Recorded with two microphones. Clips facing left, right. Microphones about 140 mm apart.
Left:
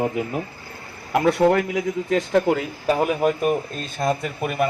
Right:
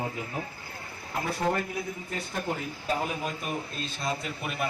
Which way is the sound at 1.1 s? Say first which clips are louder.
Left 12 dB; 80° left.